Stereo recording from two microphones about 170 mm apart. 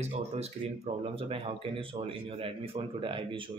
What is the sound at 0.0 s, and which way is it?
Speech, 40° right (ahead or behind).